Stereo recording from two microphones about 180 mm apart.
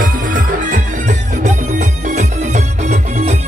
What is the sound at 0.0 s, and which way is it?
Music, 50° right (ahead or behind).